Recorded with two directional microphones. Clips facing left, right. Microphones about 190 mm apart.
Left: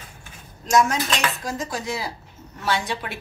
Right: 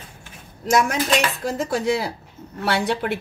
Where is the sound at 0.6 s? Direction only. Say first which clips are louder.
Even; 60° right (ahead or behind).